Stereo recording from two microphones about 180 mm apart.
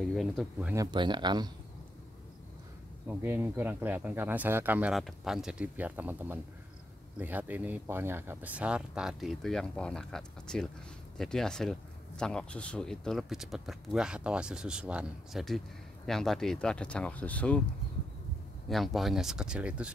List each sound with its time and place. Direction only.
0.0 s speech: centre (ahead or behind)
0.7 s speech: 25° right (ahead or behind)
3.1 s speech: 10° right (ahead or behind); by 17.6 s 10° left (ahead or behind)
18.7 s speech: centre (ahead or behind)